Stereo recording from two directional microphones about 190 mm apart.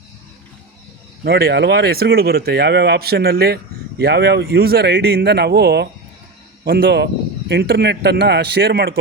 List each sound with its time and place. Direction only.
1.2 s speech: 55° right (ahead or behind)